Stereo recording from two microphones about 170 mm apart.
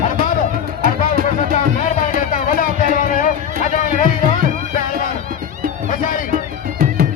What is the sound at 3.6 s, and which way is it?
Run, 45° left (ahead or behind).